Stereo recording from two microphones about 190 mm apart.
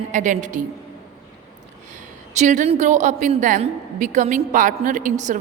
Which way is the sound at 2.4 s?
40° right (ahead or behind).